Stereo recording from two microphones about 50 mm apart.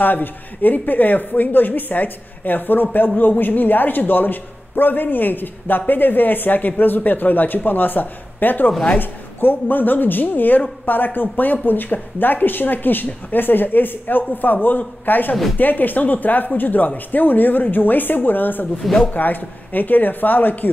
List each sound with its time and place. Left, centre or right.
0.0 s speech: left